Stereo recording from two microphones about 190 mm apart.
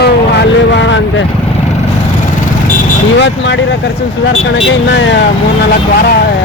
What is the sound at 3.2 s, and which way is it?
Speech, 70° left (ahead or behind).